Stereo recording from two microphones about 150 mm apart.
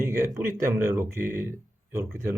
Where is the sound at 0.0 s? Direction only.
15° right (ahead or behind).